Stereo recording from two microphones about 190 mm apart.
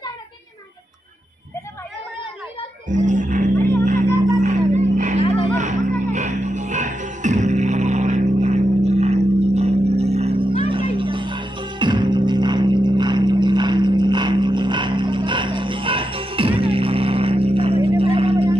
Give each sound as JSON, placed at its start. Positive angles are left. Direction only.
{"t": 2.9, "sound": "music", "side_deg": -40}
{"t": 3.5, "sound": "speech", "side_deg": 10}
{"t": 4.4, "sound": "music", "side_deg": -35}